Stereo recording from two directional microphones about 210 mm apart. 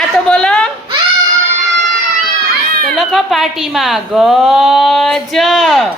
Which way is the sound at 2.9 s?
Centre (ahead or behind).